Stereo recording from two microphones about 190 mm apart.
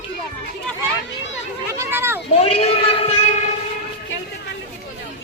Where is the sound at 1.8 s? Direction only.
10° right (ahead or behind).